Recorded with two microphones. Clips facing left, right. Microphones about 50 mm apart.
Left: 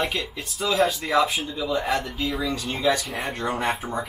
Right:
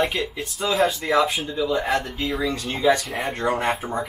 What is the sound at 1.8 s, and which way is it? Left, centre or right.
Speech, centre.